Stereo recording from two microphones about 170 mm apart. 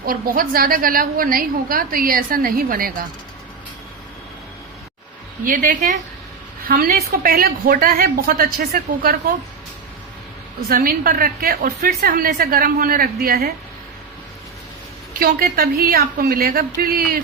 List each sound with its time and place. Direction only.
0.0 s a woman's voice: 55° right (ahead or behind)
5.5 s a woman's voice: 55° right (ahead or behind)
10.7 s a woman's voice: 60° right (ahead or behind)
15.2 s a woman's voice: 60° right (ahead or behind)